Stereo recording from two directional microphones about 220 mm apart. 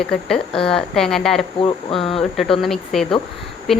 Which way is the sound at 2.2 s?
Centre (ahead or behind).